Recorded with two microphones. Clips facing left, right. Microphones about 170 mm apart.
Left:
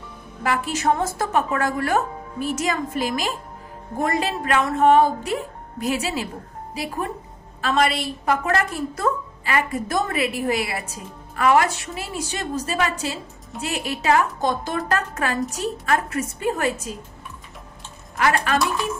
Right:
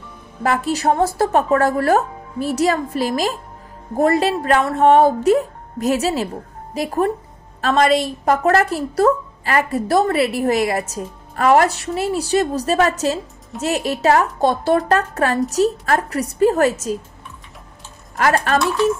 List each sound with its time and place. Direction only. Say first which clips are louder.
0.4 s a woman's voice: right 5 dB; 40° right (ahead or behind)
18.1 s a woman's voice: right 3 dB; 40° right (ahead or behind)